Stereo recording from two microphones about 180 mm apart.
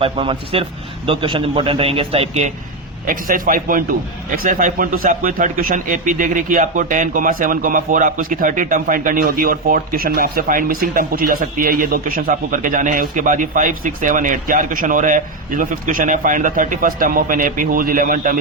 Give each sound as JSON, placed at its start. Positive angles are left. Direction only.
{"t": 0.0, "sound": "a man's voice", "side_deg": -30}
{"t": 3.1, "sound": "a man's voice", "side_deg": -50}